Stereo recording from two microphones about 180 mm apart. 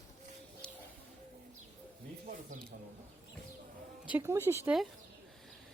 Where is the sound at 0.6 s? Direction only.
5° left (ahead or behind).